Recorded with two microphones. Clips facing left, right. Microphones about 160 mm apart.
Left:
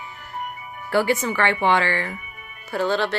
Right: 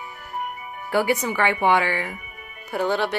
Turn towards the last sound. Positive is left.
turn(degrees=-15)  # may be behind; listen again after turning